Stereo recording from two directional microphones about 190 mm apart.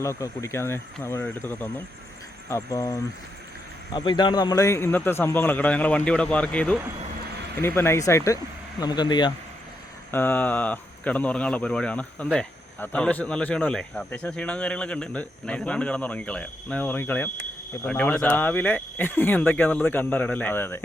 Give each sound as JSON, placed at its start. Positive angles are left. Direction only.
{"t": 0.0, "sound": "speech", "side_deg": 15}
{"t": 3.9, "sound": "speech", "side_deg": 25}
{"t": 10.1, "sound": "speech", "side_deg": 10}